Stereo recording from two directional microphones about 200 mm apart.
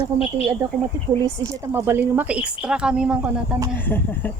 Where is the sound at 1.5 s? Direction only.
10° right (ahead or behind).